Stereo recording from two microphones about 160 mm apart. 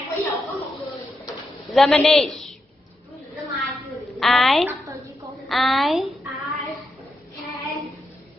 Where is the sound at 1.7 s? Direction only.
Centre (ahead or behind).